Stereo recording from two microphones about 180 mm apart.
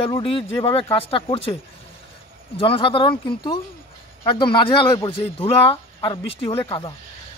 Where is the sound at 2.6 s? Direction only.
30° left (ahead or behind).